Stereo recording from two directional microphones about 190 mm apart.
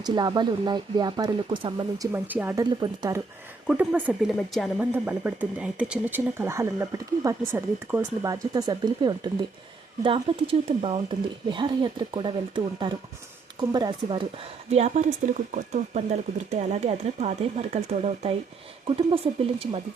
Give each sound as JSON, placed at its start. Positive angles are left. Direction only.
{"t": 0.0, "sound": "speech", "side_deg": -25}
{"t": 2.1, "sound": "speech", "side_deg": -10}
{"t": 2.6, "sound": "speech", "side_deg": -20}
{"t": 3.7, "sound": "speech", "side_deg": -10}